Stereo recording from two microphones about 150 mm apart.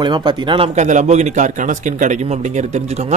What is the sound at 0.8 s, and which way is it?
Speech, 55° right (ahead or behind).